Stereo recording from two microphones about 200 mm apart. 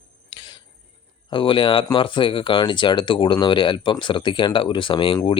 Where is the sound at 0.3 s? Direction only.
20° left (ahead or behind).